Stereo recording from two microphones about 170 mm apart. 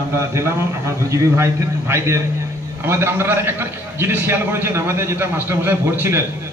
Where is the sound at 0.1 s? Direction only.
15° right (ahead or behind).